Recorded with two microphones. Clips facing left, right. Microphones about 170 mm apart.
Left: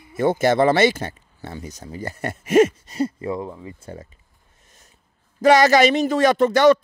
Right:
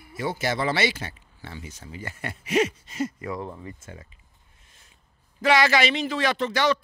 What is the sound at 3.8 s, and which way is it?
Speech, 40° left (ahead or behind).